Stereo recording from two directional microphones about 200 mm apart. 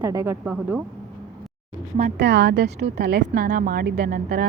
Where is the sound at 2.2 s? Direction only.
60° right (ahead or behind).